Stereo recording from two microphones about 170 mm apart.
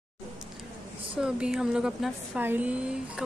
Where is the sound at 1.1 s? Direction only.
5° right (ahead or behind).